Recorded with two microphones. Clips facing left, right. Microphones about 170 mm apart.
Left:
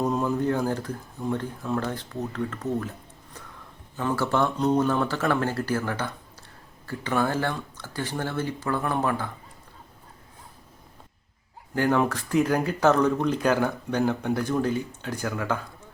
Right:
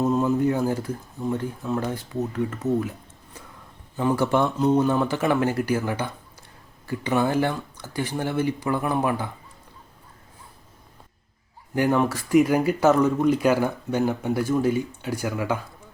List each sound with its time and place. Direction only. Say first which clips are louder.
0.0 s speech: right 4 dB; 5° right (ahead or behind)
3.9 s speech: right 4 dB; 15° right (ahead or behind)
4.4 s speech: right 2 dB; 5° right (ahead or behind)
11.7 s speech: right 2 dB; 15° right (ahead or behind)